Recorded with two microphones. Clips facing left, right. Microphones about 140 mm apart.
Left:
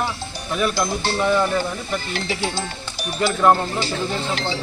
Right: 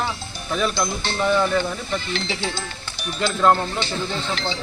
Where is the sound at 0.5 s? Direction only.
10° left (ahead or behind).